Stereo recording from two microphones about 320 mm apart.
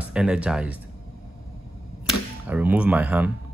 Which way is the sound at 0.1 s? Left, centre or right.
Centre.